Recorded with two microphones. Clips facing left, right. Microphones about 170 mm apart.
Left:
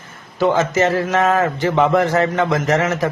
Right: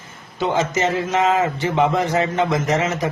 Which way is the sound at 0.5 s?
20° right (ahead or behind).